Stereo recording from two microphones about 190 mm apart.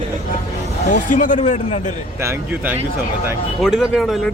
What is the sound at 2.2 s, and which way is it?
Speech, 10° right (ahead or behind).